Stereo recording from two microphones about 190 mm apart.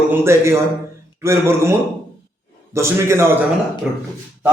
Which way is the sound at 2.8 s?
15° right (ahead or behind).